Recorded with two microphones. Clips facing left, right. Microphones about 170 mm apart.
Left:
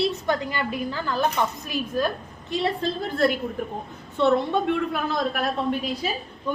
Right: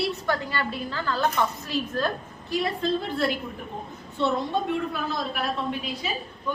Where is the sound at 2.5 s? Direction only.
25° left (ahead or behind).